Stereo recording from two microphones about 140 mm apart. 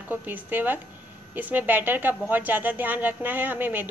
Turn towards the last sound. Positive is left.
turn(degrees=-10)  # may be behind; listen again after turning